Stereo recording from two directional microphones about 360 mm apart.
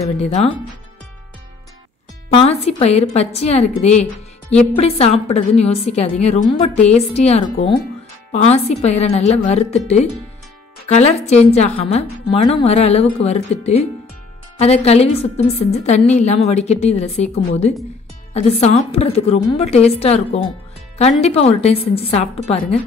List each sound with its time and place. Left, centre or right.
0.2 s a woman's voice: centre
2.3 s a woman's voice: centre
21.2 s a woman's voice: centre